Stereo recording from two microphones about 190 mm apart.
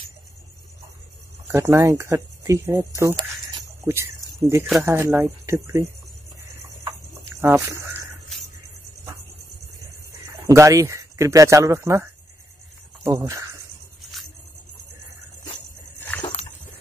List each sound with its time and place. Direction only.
1.5 s speech: 15° right (ahead or behind)
3.8 s speech: 15° right (ahead or behind)
6.5 s cricket: 15° right (ahead or behind)
7.4 s speech: 15° right (ahead or behind)
10.2 s speech: 15° right (ahead or behind)
16.2 s a sound: 30° left (ahead or behind)